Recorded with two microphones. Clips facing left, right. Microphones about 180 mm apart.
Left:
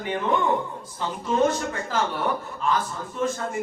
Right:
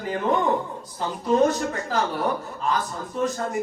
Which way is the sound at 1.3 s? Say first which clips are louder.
Right 3 dB; 40° right (ahead or behind).